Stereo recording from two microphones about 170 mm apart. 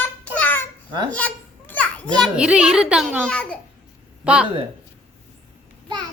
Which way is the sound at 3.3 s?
5° left (ahead or behind).